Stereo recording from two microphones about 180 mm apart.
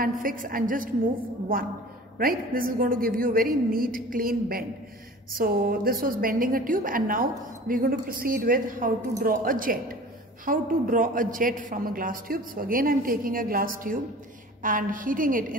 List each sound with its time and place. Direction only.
0.0 s a woman's voice: 50° right (ahead or behind)
2.1 s a woman's voice: 50° right (ahead or behind)